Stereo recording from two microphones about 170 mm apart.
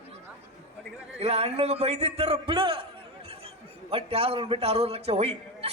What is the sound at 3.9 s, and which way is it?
A man's voice, 35° right (ahead or behind).